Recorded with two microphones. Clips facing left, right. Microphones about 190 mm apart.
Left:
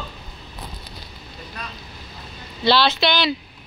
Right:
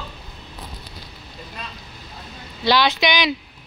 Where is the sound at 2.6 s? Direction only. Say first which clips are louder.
Even; 15° right (ahead or behind).